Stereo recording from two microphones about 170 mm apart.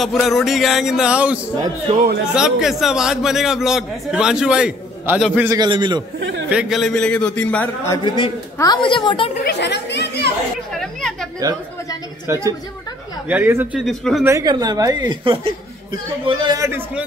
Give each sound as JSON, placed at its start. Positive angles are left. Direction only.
{"t": 0.0, "sound": "a man's voice", "side_deg": 0}
{"t": 5.5, "sound": "speech", "side_deg": -25}
{"t": 6.1, "sound": "a sound", "side_deg": -90}
{"t": 6.5, "sound": "a man's voice", "side_deg": -5}
{"t": 8.5, "sound": "a woman's voice", "side_deg": 25}
{"t": 9.4, "sound": "speech", "side_deg": 80}
{"t": 10.8, "sound": "chatter", "side_deg": 5}
{"t": 12.3, "sound": "speech", "side_deg": -15}
{"t": 13.7, "sound": "a man's voice", "side_deg": 0}
{"t": 14.2, "sound": "speech", "side_deg": -20}